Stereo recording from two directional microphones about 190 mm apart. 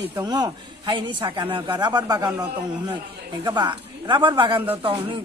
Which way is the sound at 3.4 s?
25° right (ahead or behind).